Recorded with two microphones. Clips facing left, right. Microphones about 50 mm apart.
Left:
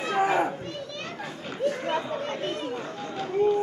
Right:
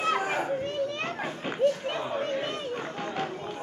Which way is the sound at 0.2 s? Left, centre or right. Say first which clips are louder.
Left 6 dB; left.